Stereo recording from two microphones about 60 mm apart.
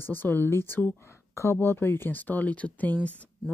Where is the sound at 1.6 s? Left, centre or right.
Left.